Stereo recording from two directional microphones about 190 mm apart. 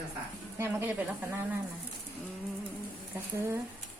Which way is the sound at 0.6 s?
10° right (ahead or behind).